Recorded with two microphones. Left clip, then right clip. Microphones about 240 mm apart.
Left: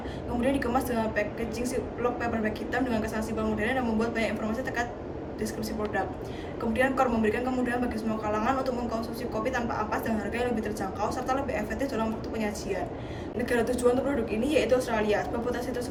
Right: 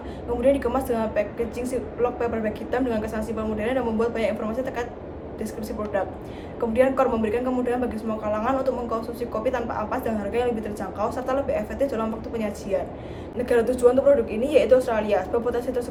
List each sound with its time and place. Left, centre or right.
0.4 s a man's voice: centre
6.7 s a man's voice: centre